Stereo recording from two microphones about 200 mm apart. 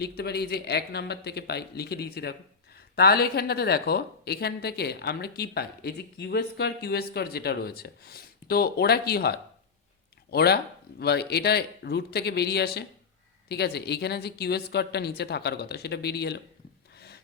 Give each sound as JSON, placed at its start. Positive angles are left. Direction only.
{"t": 0.0, "sound": "a woman's voice", "side_deg": 55}